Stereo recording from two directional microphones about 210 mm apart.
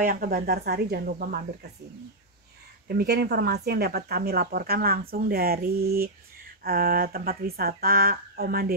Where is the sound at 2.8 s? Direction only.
45° right (ahead or behind).